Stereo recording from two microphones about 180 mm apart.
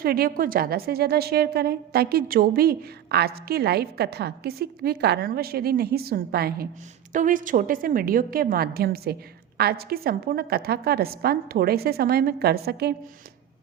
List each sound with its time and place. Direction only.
0.0 s a woman's voice: 55° right (ahead or behind)
7.1 s a woman's voice: 45° right (ahead or behind)